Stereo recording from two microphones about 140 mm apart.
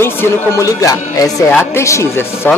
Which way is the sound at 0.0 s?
20° left (ahead or behind).